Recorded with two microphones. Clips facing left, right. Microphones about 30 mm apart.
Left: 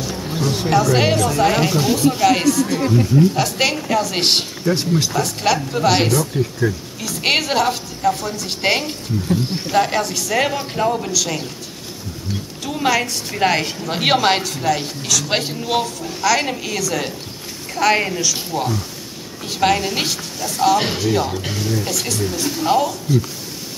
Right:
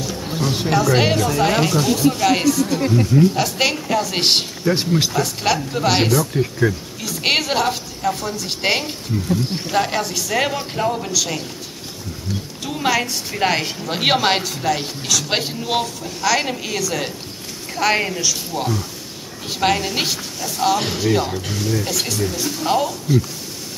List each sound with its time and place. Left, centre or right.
0.2 s a sound: centre
0.7 s a woman's voice: centre
4.7 s speech: centre
5.1 s a woman's voice: centre
12.6 s a woman's voice: centre